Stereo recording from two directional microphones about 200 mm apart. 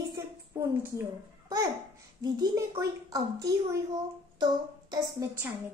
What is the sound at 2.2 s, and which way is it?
Speech, 20° right (ahead or behind).